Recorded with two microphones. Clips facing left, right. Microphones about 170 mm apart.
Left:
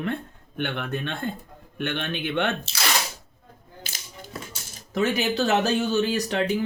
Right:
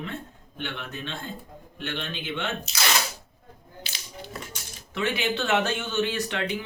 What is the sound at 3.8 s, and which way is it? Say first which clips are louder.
Music: right 2 dB; 45° left (ahead or behind).